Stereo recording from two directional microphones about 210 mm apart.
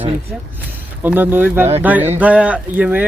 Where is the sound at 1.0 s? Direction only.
10° right (ahead or behind).